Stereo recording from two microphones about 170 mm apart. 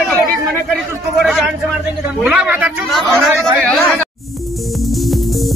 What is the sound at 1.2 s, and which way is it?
A man's voice, centre (ahead or behind).